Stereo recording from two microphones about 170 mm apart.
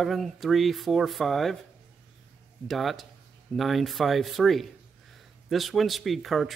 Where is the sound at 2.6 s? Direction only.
Centre (ahead or behind).